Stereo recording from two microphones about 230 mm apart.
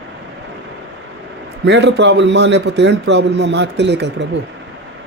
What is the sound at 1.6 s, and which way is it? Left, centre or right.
A man's voice, right.